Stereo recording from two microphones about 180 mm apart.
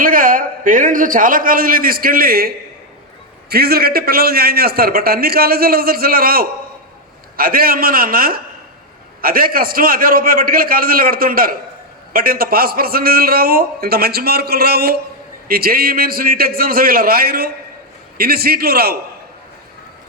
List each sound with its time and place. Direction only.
0.0 s a man's voice: 50° right (ahead or behind)
3.5 s a man's voice: 60° right (ahead or behind)